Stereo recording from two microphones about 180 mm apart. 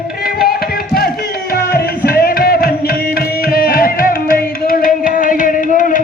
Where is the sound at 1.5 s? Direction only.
55° left (ahead or behind).